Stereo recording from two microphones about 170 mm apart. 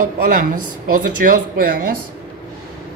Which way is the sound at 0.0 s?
55° right (ahead or behind).